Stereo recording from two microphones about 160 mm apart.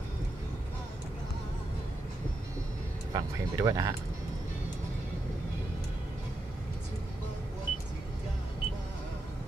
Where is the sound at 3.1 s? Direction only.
20° right (ahead or behind).